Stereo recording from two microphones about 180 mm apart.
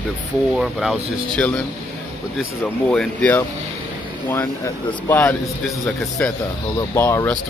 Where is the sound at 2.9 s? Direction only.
5° left (ahead or behind).